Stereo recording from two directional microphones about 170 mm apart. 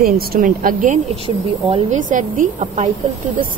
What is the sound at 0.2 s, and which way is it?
Speech, 60° right (ahead or behind).